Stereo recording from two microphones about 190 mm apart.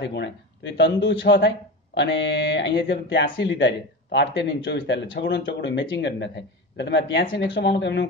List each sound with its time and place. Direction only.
0.0 s speech: 65° left (ahead or behind)